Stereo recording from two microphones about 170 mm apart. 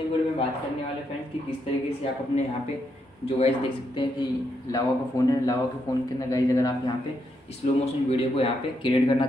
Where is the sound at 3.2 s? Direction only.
35° left (ahead or behind).